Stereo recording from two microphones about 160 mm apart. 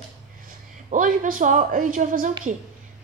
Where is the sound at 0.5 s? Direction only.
55° right (ahead or behind).